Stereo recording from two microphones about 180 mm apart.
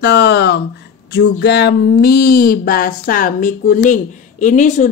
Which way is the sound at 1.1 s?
70° left (ahead or behind).